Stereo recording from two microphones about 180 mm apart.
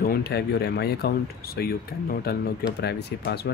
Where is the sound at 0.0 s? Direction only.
60° left (ahead or behind).